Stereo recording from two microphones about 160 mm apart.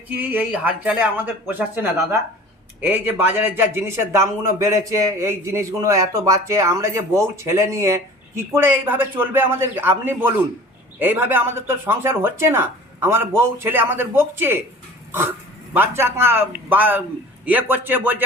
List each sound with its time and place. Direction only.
0.2 s a man's voice: 10° right (ahead or behind)
15.7 s a man's voice: 15° right (ahead or behind)